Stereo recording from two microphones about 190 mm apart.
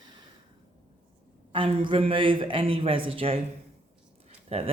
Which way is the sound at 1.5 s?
25° right (ahead or behind).